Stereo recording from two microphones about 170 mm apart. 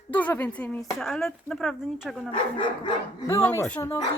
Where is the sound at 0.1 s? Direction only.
10° left (ahead or behind).